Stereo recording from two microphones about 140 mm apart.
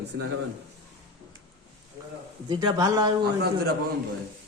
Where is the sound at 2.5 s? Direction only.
30° right (ahead or behind).